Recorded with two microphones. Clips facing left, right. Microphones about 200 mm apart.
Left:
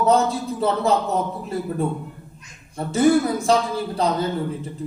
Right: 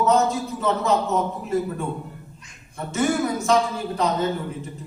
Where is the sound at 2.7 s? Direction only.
35° left (ahead or behind).